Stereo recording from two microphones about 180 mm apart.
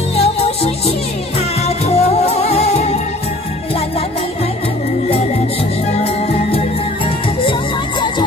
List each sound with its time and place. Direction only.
0.2 s music: 35° left (ahead or behind)